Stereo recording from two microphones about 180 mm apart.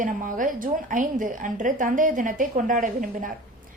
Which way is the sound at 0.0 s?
45° right (ahead or behind).